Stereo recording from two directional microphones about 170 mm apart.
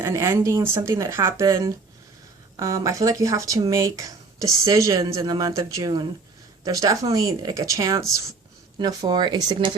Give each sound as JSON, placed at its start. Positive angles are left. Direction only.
{"t": 0.0, "sound": "speech", "side_deg": -15}
{"t": 2.6, "sound": "speech", "side_deg": -20}